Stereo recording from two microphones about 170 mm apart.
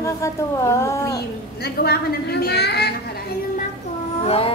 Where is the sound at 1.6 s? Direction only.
70° left (ahead or behind).